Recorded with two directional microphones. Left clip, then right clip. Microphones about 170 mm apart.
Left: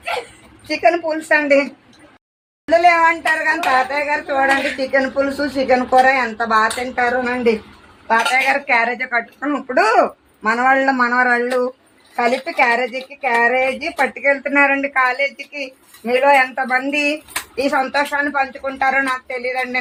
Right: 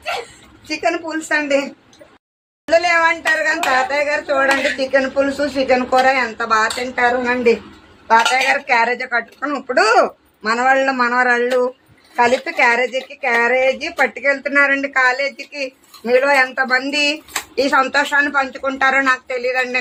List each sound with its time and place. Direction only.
0.7 s a woman's voice: 20° left (ahead or behind)
2.6 s a woman's voice: 20° left (ahead or behind)
8.0 s a woman's voice: centre (ahead or behind)
17.6 s speech: 15° right (ahead or behind)